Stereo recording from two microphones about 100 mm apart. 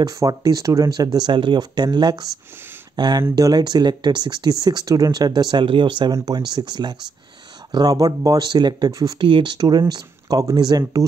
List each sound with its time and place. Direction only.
0.0 s speech: 40° right (ahead or behind); by 6.1 s 55° right (ahead or behind)
6.1 s speech: 40° right (ahead or behind)
9.3 s speech: 50° right (ahead or behind)